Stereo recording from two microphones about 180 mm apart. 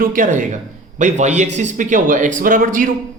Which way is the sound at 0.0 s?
50° right (ahead or behind).